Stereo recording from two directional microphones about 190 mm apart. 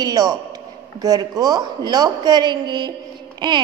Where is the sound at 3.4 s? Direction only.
25° right (ahead or behind).